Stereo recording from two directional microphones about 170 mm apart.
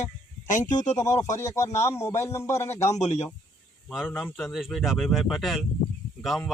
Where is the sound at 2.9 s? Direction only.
40° left (ahead or behind).